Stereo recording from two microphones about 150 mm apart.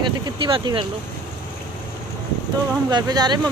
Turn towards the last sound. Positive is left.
turn(degrees=-30)  # may be behind; listen again after turning